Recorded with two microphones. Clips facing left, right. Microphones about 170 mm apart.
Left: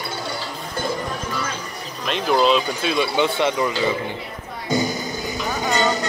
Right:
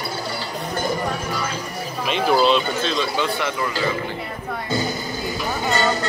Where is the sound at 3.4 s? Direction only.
20° left (ahead or behind).